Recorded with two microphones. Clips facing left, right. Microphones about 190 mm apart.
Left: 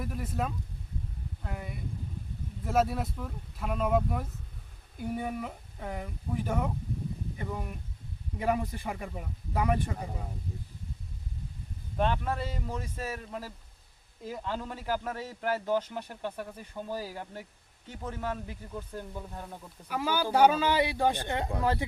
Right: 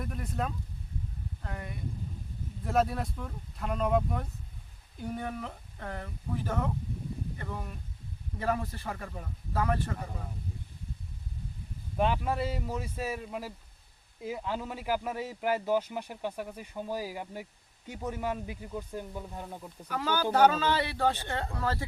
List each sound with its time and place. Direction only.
0.0 s speech: 5° left (ahead or behind)
11.9 s a man's voice: 5° right (ahead or behind)
19.9 s speech: 10° left (ahead or behind)